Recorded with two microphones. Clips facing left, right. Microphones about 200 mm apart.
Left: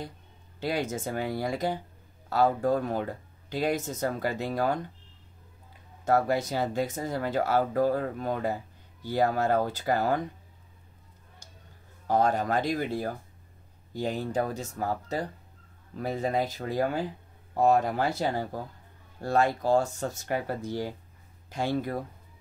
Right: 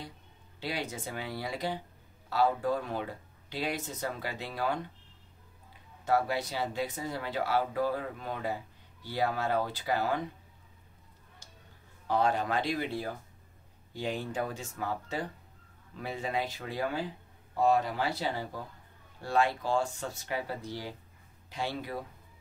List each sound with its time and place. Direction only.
0.6 s speech: 45° left (ahead or behind)
6.0 s speech: 45° left (ahead or behind)
11.4 s a sound: 45° left (ahead or behind)
12.1 s speech: 45° left (ahead or behind)